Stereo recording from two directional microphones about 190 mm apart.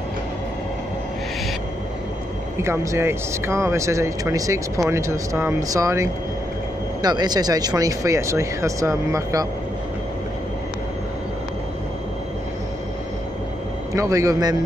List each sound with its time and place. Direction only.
2.6 s speech: 15° right (ahead or behind)
13.9 s speech: 15° right (ahead or behind)